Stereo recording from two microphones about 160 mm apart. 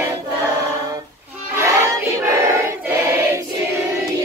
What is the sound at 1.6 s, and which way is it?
Choir, 20° right (ahead or behind).